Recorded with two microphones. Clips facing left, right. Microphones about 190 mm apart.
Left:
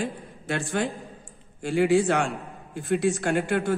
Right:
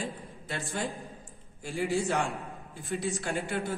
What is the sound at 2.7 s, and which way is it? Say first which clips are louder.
Speech: left 10 dB; 70° left (ahead or behind).